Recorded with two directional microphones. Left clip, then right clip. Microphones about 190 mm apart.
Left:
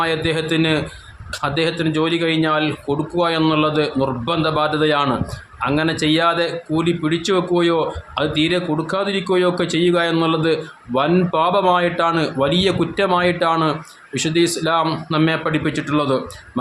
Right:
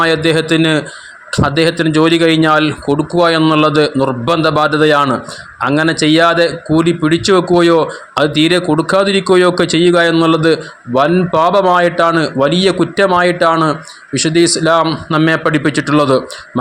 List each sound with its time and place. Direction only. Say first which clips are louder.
0.0 s speech: right 8 dB; 35° right (ahead or behind)